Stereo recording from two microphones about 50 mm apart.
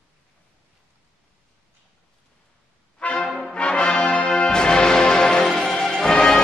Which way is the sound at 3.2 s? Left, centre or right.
Centre.